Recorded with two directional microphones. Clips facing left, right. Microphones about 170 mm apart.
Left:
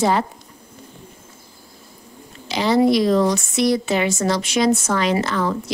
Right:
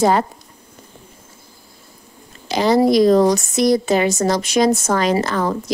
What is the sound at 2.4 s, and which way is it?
Speech, 45° right (ahead or behind).